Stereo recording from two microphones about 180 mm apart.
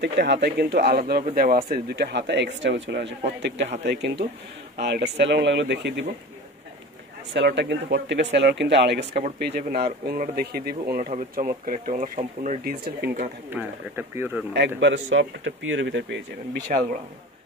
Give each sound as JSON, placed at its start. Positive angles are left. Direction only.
{"t": 0.0, "sound": "speech", "side_deg": -70}
{"t": 1.7, "sound": "speech", "side_deg": -65}
{"t": 7.3, "sound": "speech", "side_deg": -80}
{"t": 9.5, "sound": "speech", "side_deg": -60}
{"t": 12.6, "sound": "speech", "side_deg": -60}
{"t": 13.5, "sound": "speech", "side_deg": -10}
{"t": 14.8, "sound": "speech", "side_deg": -90}
{"t": 16.7, "sound": "speech", "side_deg": -50}